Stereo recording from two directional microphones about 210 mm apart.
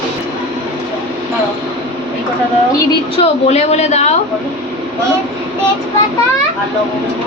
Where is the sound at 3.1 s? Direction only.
30° left (ahead or behind).